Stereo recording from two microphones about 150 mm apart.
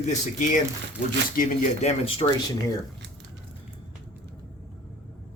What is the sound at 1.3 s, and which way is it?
Speech, 60° left (ahead or behind).